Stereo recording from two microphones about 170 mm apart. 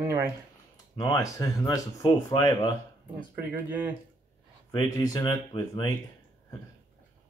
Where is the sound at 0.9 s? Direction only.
25° left (ahead or behind).